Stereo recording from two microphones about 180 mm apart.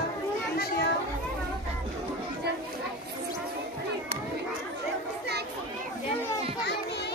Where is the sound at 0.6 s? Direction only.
60° left (ahead or behind).